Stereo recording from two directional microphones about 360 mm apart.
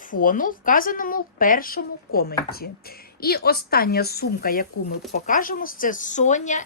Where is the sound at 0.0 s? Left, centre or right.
Left.